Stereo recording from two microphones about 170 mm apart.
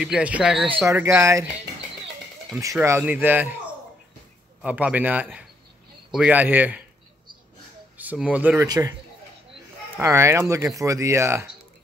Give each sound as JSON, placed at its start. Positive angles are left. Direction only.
{"t": 0.0, "sound": "speech", "side_deg": -5}
{"t": 2.6, "sound": "speech", "side_deg": -20}
{"t": 4.6, "sound": "speech", "side_deg": -10}
{"t": 8.0, "sound": "speech", "side_deg": -10}
{"t": 8.6, "sound": "a man's voice", "side_deg": -20}
{"t": 9.9, "sound": "speech", "side_deg": -15}